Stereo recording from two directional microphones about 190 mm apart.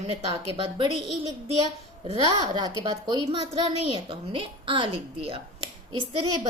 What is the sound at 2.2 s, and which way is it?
A woman's voice, 20° right (ahead or behind).